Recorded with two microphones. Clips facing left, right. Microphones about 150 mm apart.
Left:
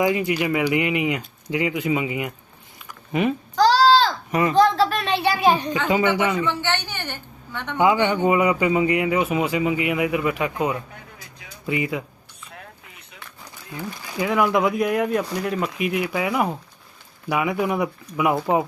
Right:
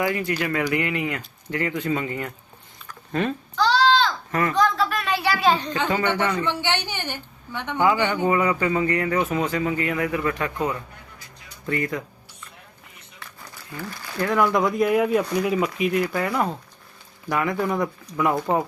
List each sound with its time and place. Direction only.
0.0 s speech: 20° left (ahead or behind)
2.8 s a sound: 15° left (ahead or behind)
3.5 s a sound: 40° left (ahead or behind)
4.3 s a child's voice: 15° left (ahead or behind)
4.5 s a child's voice: 30° left (ahead or behind); by 6.5 s 15° left (ahead or behind)
6.6 s a woman's voice: 15° right (ahead or behind)
8.0 s speech: 15° left (ahead or behind)
13.4 s speech: 15° left (ahead or behind)